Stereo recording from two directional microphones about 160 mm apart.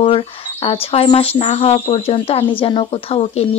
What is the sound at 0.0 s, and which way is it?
Speech, 35° left (ahead or behind).